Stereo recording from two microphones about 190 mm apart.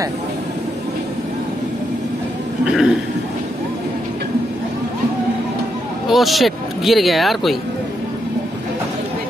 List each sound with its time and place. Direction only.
2.6 s speech: 5° right (ahead or behind)
6.0 s speech: centre (ahead or behind)